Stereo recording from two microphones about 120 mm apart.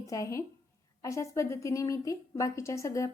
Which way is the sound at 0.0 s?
25° left (ahead or behind).